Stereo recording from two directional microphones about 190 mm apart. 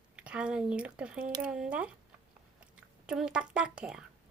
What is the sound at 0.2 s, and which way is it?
Speech, 5° right (ahead or behind).